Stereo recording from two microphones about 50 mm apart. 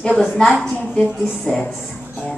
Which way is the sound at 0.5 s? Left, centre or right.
Centre.